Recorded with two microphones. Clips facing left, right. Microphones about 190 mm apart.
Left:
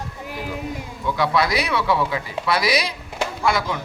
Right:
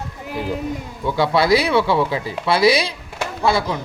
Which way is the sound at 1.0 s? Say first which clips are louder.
Right 3 dB; 30° right (ahead or behind).